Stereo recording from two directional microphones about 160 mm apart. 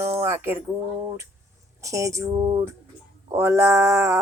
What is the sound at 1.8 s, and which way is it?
Speech, 20° right (ahead or behind).